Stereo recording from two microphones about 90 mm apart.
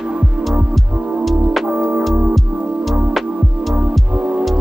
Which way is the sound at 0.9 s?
20° right (ahead or behind).